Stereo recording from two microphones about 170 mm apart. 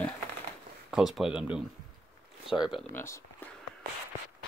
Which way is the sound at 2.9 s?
15° left (ahead or behind).